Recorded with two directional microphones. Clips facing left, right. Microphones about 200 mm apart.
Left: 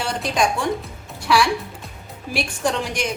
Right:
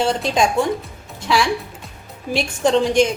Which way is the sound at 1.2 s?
25° right (ahead or behind).